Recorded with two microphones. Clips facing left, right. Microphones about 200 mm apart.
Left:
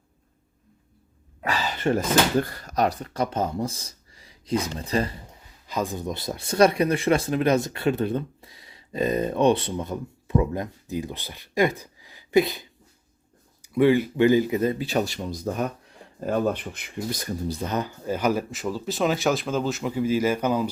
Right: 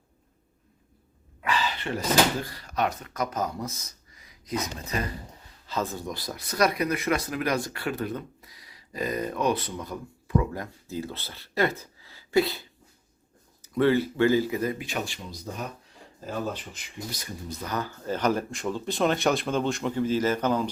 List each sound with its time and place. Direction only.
1.4 s speech: 40° left (ahead or behind)
5.6 s speech: 15° left (ahead or behind); by 17.3 s 50° left (ahead or behind)
17.5 s speech: 25° left (ahead or behind); by 20.7 s 10° left (ahead or behind)